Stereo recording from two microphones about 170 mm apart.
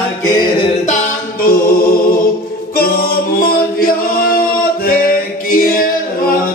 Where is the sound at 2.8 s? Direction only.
60° left (ahead or behind).